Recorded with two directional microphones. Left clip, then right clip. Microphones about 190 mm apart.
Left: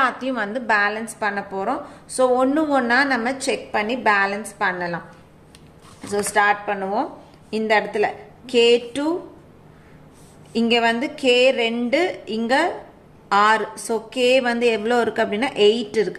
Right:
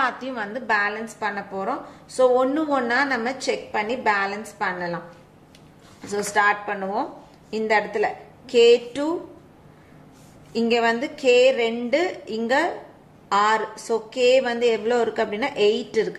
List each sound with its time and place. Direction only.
0.0 s a woman's voice: 15° left (ahead or behind)
6.0 s a woman's voice: 5° left (ahead or behind)
10.5 s a woman's voice: 20° left (ahead or behind)